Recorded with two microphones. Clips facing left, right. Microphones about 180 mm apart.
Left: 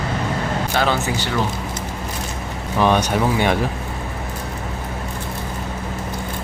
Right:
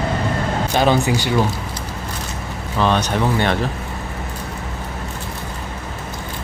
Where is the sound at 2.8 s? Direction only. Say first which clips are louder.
Left 1 dB; 10° left (ahead or behind).